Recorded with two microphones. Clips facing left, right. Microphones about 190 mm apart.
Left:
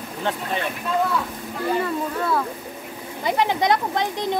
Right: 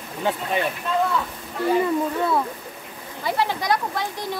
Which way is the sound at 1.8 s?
20° right (ahead or behind).